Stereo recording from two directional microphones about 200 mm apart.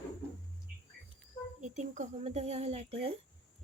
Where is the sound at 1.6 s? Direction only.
35° right (ahead or behind).